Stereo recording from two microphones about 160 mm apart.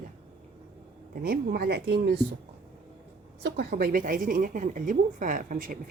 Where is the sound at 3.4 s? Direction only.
90° right.